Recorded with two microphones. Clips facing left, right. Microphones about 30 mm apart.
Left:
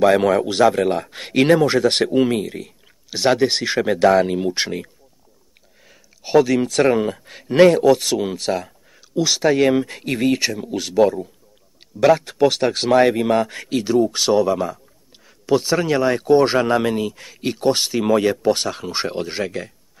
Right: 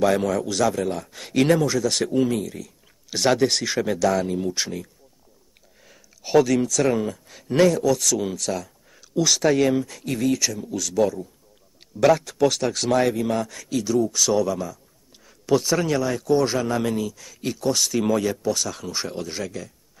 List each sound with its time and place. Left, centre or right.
0.2 s a man's voice: left
0.5 s speech: left
3.1 s speech: centre; by 4.9 s left
5.9 s a sound: centre
6.6 s speech: left
9.1 s speech: centre
9.7 s speech: left
11.9 s speech: centre
12.4 s speech: left
13.1 s speech: left
15.2 s speech: centre
16.0 s speech: left
17.9 s speech: left
18.2 s speech: left